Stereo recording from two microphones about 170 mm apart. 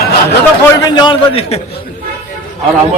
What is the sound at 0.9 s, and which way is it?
Speech, 25° left (ahead or behind).